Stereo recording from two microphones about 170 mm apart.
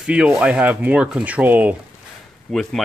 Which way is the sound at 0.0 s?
5° right (ahead or behind).